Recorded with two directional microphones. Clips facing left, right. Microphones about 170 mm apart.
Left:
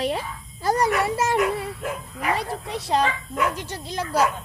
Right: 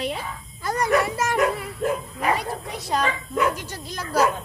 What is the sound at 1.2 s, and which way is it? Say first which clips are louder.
Speech: even; 30° left (ahead or behind).